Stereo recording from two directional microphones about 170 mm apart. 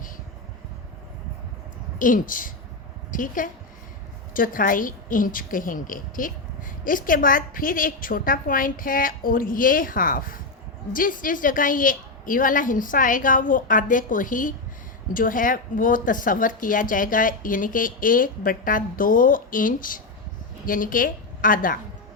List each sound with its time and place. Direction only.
2.0 s a woman's voice: 50° left (ahead or behind)